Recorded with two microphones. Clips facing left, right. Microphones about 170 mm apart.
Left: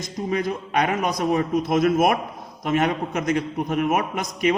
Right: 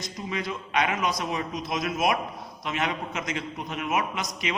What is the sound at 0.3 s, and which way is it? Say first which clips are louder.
A man's voice: left 7 dB; 45° left (ahead or behind).